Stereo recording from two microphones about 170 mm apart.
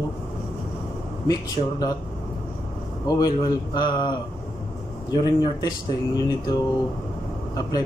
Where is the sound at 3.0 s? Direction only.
20° left (ahead or behind).